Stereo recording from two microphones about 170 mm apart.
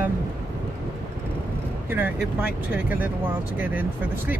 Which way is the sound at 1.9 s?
10° right (ahead or behind).